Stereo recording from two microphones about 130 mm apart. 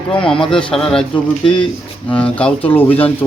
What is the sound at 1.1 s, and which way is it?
Speech, 40° left (ahead or behind).